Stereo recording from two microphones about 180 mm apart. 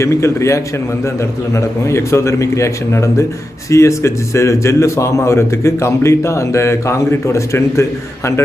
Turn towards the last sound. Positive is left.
turn(degrees=15)  # may be behind; listen again after turning